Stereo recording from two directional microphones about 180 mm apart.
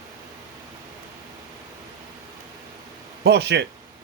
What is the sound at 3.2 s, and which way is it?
Speech, 70° right (ahead or behind).